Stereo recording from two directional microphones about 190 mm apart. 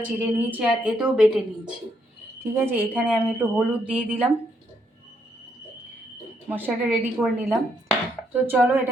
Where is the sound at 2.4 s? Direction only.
10° right (ahead or behind).